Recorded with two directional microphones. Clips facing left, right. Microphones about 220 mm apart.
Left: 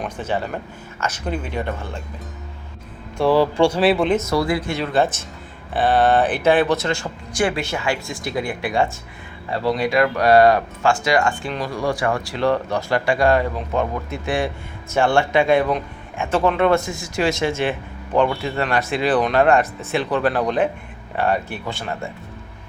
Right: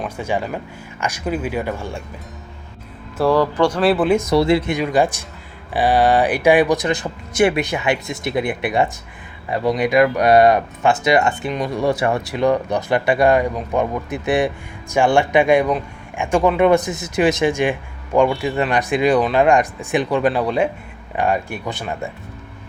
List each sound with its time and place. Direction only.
0.0 s speech: 10° right (ahead or behind)
3.4 s speech: 10° left (ahead or behind); by 4.4 s 10° right (ahead or behind)
4.4 s speech: 25° right (ahead or behind)